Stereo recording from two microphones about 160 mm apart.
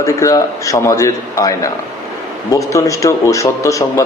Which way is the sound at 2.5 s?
20° left (ahead or behind).